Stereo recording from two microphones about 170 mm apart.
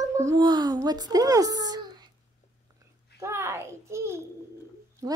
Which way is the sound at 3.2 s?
15° right (ahead or behind).